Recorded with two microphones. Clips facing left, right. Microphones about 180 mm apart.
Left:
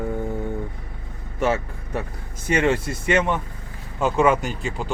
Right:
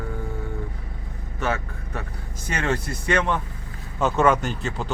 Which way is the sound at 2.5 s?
25° left (ahead or behind).